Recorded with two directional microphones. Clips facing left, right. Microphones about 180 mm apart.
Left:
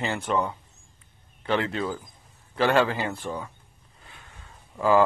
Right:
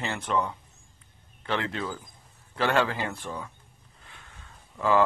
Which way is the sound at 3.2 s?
25° left (ahead or behind).